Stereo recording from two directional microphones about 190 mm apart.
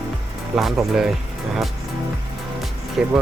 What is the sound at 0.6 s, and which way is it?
Speech, centre (ahead or behind).